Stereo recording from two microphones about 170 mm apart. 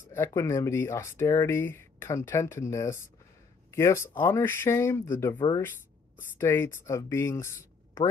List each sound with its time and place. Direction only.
0.1 s speech: 15° left (ahead or behind)